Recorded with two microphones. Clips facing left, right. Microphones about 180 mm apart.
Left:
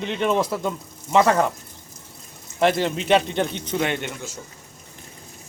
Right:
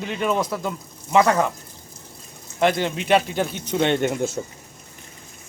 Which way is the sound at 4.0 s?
45° right (ahead or behind).